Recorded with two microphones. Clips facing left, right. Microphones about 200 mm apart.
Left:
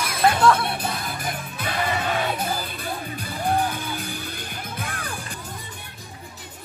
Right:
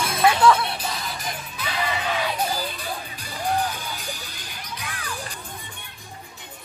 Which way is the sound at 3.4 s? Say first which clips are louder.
Left 2 dB; 55° left (ahead or behind).